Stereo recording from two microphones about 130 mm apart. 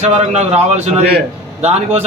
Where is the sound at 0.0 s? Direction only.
60° right (ahead or behind).